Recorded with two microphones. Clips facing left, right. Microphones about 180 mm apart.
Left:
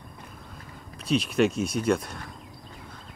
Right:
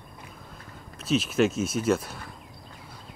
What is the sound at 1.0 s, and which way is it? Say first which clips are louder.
Speech: even; centre (ahead or behind).